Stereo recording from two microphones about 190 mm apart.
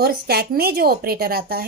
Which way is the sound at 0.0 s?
55° right (ahead or behind).